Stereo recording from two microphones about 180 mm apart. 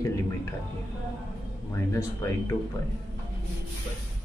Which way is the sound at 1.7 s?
15° left (ahead or behind).